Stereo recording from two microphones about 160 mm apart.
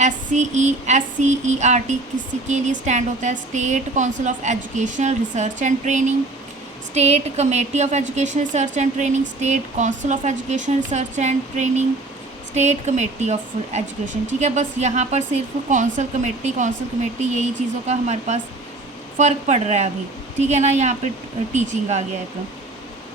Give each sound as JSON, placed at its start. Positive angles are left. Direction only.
{"t": 0.0, "sound": "a woman's voice", "side_deg": -45}